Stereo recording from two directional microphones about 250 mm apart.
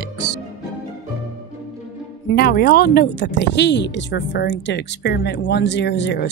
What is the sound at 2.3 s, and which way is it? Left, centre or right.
Speech, left.